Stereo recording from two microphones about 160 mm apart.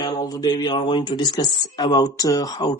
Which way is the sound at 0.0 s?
25° left (ahead or behind).